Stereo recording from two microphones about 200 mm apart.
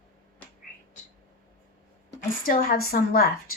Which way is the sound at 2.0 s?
45° left (ahead or behind).